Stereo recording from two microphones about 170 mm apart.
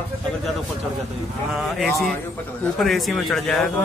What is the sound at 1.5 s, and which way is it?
Speech, centre (ahead or behind).